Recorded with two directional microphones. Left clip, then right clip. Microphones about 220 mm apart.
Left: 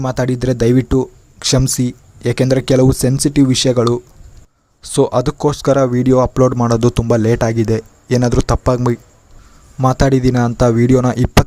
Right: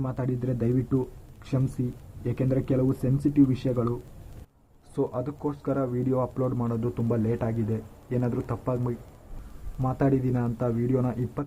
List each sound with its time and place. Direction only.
0.0 s speech: 40° left (ahead or behind)